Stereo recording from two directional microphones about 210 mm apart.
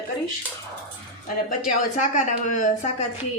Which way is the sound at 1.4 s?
35° left (ahead or behind).